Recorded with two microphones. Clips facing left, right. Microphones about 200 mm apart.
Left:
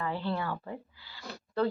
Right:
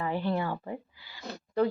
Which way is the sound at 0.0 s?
20° right (ahead or behind).